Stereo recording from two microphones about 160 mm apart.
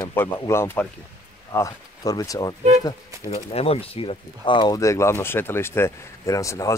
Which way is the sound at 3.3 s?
40° left (ahead or behind).